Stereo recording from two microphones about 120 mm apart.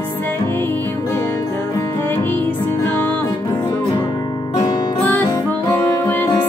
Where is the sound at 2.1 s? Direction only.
15° left (ahead or behind).